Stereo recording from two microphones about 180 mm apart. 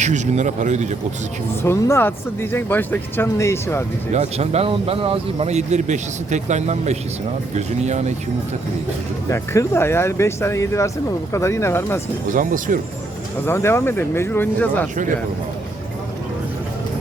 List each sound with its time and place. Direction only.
0.0 s speech: 40° right (ahead or behind)
1.6 s speech: 15° left (ahead or behind)
4.1 s speech: 35° right (ahead or behind)
9.3 s speech: 15° left (ahead or behind)
12.3 s speech: 45° right (ahead or behind)
13.4 s speech: 15° left (ahead or behind)